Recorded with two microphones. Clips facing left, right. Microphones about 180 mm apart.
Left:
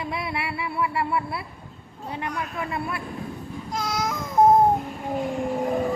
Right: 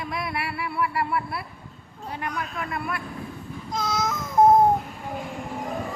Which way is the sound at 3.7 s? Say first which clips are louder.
Right 1 dB; 10° left (ahead or behind).